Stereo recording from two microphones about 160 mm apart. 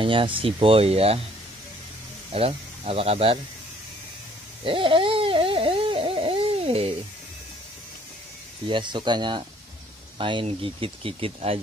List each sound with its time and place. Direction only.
0.0 s speech: 30° right (ahead or behind)
2.3 s speech: 35° right (ahead or behind)
4.6 s a sound: 35° right (ahead or behind)
8.6 s speech: 30° right (ahead or behind)